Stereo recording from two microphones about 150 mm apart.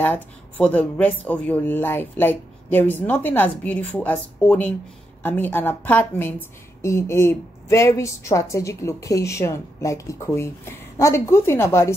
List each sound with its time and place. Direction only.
0.0 s a woman's voice: 10° left (ahead or behind)